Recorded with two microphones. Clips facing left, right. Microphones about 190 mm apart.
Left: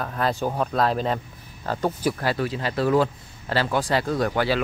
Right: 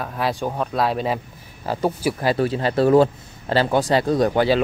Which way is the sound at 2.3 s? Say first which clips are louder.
Right 6 dB; 30° right (ahead or behind).